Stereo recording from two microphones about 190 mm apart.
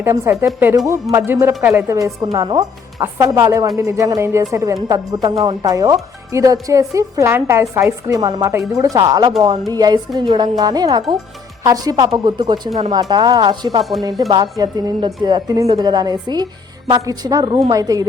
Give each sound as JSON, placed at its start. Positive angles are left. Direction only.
{"t": 0.0, "sound": "a woman's voice", "side_deg": -15}